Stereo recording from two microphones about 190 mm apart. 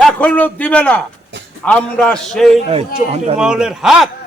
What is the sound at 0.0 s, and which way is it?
A man's voice, 5° left (ahead or behind).